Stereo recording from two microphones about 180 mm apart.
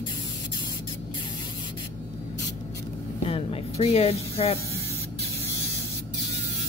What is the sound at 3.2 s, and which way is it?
Spray, 30° left (ahead or behind).